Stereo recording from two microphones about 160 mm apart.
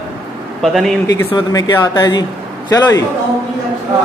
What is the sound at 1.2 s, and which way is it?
Speech, 25° left (ahead or behind).